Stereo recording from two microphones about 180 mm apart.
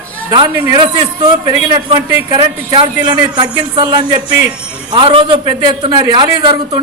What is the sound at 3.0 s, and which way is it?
A man's voice, 25° right (ahead or behind).